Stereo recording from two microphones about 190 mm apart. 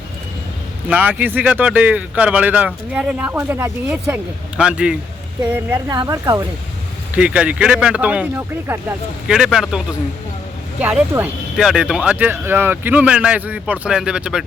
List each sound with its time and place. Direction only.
0.9 s speech: 10° right (ahead or behind)
5.6 s speech: 20° right (ahead or behind)
7.2 s speech: 5° right (ahead or behind)